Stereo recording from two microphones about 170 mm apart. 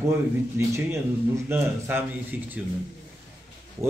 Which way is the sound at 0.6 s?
15° right (ahead or behind).